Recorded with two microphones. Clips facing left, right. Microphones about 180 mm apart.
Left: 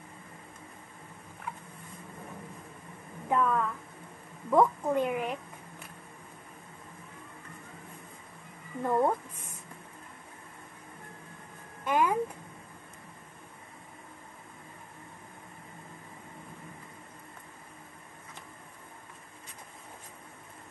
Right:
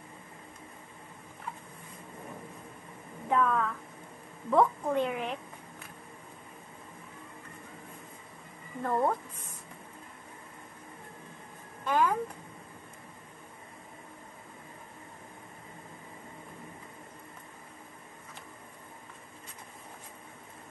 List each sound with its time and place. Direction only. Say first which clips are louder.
3.3 s a woman's voice: even; 5° left (ahead or behind)
8.8 s a woman's voice: left 2 dB; 10° left (ahead or behind)
11.8 s music: even; 10° left (ahead or behind)